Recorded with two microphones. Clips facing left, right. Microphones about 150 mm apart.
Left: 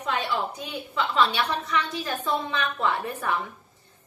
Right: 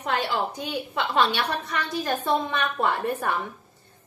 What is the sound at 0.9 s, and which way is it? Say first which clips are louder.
A woman's voice: even; 65° right (ahead or behind).